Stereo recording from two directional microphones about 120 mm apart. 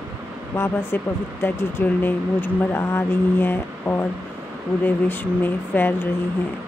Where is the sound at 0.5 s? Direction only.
20° left (ahead or behind).